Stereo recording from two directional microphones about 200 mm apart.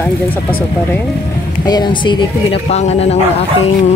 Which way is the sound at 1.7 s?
20° left (ahead or behind).